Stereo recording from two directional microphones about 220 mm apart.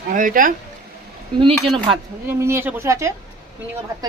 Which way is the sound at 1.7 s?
20° right (ahead or behind).